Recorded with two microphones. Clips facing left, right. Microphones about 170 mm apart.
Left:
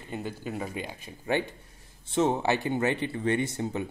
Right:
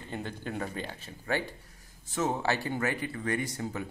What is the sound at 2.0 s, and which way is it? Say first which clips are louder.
Speech: left 5 dB; 30° left (ahead or behind).